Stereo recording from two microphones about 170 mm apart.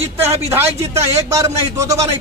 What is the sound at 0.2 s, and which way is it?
A man's voice, 15° right (ahead or behind).